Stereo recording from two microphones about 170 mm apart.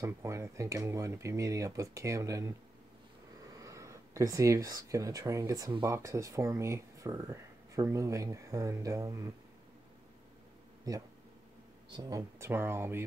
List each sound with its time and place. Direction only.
0.0 s speech: 15° right (ahead or behind)
11.9 s speech: 20° right (ahead or behind)